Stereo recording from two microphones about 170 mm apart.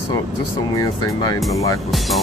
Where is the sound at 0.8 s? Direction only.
25° left (ahead or behind).